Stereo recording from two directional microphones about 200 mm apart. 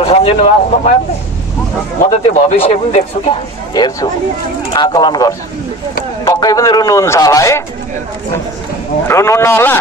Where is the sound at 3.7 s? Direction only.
20° left (ahead or behind).